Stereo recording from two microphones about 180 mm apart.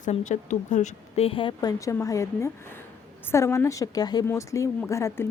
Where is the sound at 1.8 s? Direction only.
15° left (ahead or behind).